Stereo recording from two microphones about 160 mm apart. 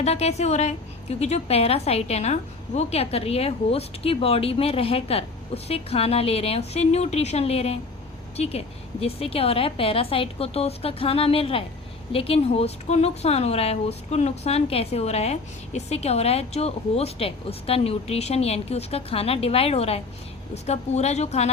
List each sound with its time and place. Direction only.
0.0 s a woman's voice: 40° left (ahead or behind)